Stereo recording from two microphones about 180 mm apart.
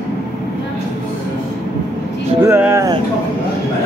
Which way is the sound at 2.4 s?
15° right (ahead or behind).